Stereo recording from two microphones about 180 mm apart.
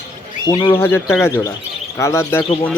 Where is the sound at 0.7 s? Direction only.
15° left (ahead or behind).